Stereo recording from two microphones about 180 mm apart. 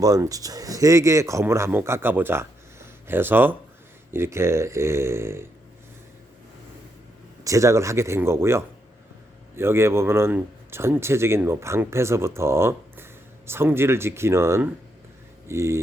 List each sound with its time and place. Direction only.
0.0 s speech: 20° right (ahead or behind)
7.4 s speech: 15° right (ahead or behind)